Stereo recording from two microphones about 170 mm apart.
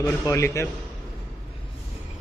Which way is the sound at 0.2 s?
15° left (ahead or behind).